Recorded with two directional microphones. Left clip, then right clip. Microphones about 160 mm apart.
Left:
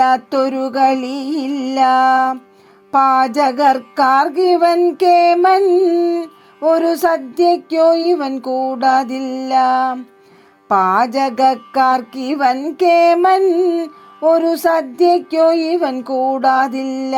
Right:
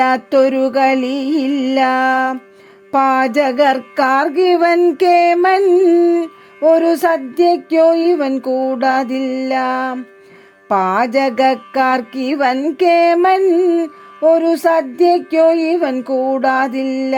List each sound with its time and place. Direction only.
0.0 s music: 35° right (ahead or behind)